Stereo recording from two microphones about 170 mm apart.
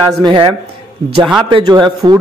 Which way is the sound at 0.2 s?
30° right (ahead or behind).